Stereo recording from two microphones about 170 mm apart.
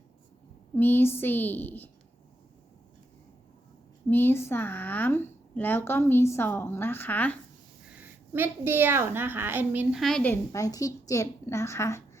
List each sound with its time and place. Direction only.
0.8 s a woman's voice: 10° left (ahead or behind)
4.1 s a woman's voice: 10° left (ahead or behind)
7.9 s a woman's voice: 10° right (ahead or behind)
10.0 s a woman's voice: 5° left (ahead or behind)